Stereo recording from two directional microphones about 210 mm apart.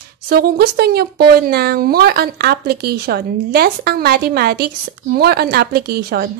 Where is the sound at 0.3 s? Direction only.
50° right (ahead or behind).